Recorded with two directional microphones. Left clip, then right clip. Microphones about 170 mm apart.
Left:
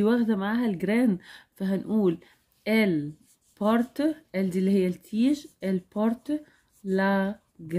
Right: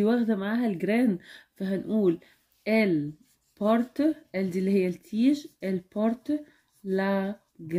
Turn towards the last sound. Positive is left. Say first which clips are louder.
# left 3 dB
turn(degrees=30)  # may be behind; listen again after turning